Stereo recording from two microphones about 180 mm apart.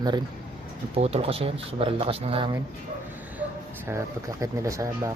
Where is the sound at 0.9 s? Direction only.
35° right (ahead or behind).